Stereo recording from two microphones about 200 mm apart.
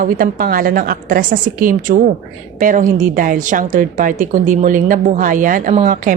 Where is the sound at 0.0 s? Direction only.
45° right (ahead or behind).